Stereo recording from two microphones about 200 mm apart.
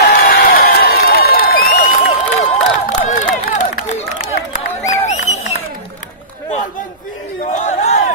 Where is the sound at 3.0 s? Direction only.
40° left (ahead or behind).